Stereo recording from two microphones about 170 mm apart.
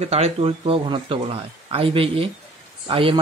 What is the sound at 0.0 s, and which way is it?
Speech, 35° right (ahead or behind).